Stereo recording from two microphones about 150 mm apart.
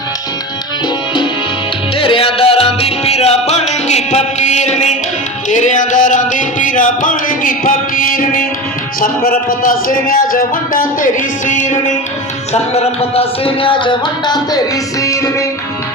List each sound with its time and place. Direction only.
2.0 s music: 35° left (ahead or behind); by 11.9 s 55° left (ahead or behind)
12.7 s music: 45° left (ahead or behind); by 15.4 s 20° left (ahead or behind)